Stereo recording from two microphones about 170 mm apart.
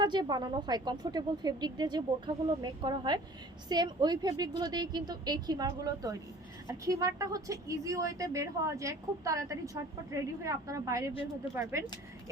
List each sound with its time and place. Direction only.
0.0 s a woman's voice: 25° right (ahead or behind)